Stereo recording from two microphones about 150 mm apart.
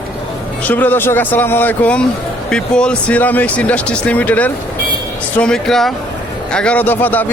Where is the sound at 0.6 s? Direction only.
10° left (ahead or behind).